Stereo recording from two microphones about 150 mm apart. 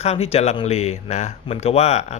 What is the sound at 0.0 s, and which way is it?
Speech, 45° left (ahead or behind).